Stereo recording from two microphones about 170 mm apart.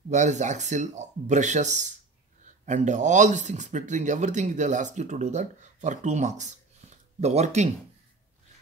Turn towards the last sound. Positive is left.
turn(degrees=-40)  # may be behind; listen again after turning